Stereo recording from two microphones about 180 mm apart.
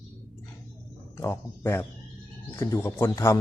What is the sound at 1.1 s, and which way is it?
A man's voice, 15° left (ahead or behind).